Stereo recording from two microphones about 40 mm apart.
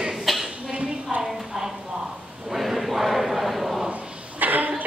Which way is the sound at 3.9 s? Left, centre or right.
Right.